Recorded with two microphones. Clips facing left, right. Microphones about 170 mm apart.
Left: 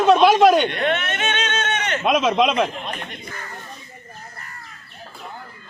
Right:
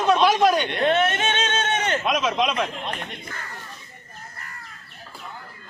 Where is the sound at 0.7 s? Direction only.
30° right (ahead or behind).